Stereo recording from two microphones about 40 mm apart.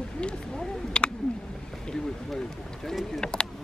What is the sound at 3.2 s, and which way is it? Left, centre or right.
Speech, centre.